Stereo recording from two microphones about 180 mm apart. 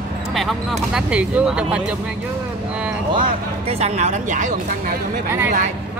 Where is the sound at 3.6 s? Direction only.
35° right (ahead or behind).